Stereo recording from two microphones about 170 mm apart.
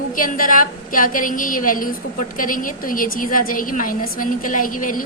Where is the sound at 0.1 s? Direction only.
55° left (ahead or behind).